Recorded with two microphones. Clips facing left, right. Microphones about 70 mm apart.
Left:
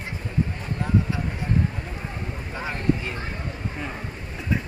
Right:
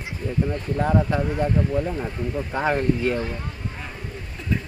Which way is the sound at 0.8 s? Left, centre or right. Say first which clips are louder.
Right 4 dB; right.